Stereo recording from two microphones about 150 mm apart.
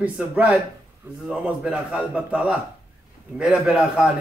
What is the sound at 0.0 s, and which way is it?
A man's voice, 10° right (ahead or behind).